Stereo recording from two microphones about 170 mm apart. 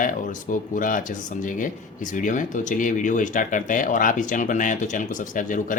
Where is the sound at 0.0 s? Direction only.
50° left (ahead or behind).